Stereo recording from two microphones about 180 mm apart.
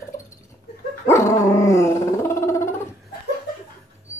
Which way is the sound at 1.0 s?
15° left (ahead or behind).